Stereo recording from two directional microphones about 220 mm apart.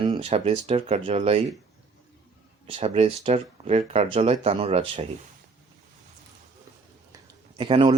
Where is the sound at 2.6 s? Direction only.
25° right (ahead or behind).